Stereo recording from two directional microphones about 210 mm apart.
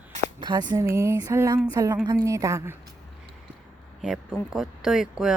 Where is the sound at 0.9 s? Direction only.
15° right (ahead or behind).